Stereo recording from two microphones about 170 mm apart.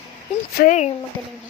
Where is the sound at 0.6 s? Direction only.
45° left (ahead or behind).